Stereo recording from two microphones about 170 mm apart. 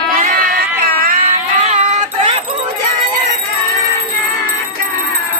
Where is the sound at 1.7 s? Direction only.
40° right (ahead or behind).